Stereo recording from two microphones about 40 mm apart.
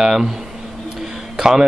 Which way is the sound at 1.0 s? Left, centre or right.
Centre.